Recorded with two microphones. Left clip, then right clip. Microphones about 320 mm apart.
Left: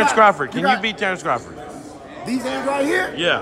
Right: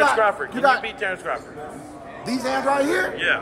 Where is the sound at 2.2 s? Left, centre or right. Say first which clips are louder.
Right 1 dB; centre.